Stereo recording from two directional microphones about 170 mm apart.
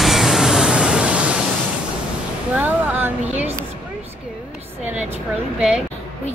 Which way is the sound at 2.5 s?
10° right (ahead or behind).